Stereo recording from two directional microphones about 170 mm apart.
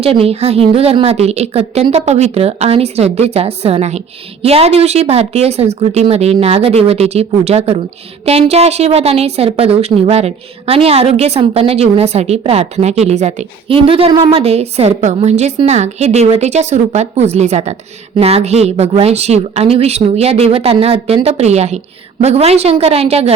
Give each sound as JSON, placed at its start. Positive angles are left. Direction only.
{"t": 0.0, "sound": "a woman's voice", "side_deg": -35}